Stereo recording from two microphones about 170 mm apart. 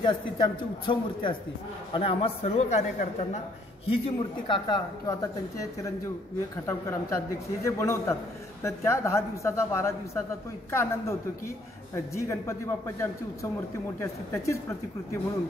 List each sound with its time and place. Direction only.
0.0 s a man's voice: 25° left (ahead or behind)
6.6 s a woman's voice: 15° left (ahead or behind)